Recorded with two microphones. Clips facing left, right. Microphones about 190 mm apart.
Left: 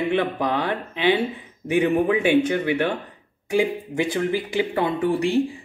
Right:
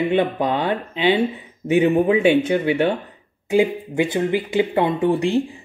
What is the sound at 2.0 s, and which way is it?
Speech, 25° right (ahead or behind).